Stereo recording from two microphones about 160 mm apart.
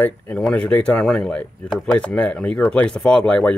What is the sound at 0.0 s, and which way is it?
Speech, 10° left (ahead or behind).